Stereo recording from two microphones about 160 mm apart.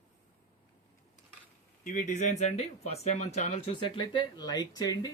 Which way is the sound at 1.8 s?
55° left (ahead or behind).